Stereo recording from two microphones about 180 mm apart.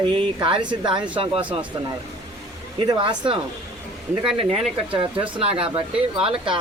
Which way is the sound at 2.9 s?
25° right (ahead or behind).